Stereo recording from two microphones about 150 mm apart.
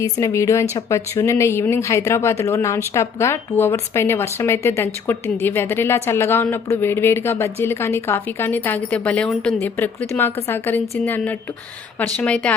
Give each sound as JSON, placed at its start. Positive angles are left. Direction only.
{"t": 0.0, "sound": "speech", "side_deg": 20}